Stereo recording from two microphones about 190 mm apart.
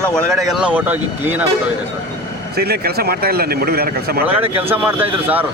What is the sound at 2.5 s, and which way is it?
Speech, 55° right (ahead or behind).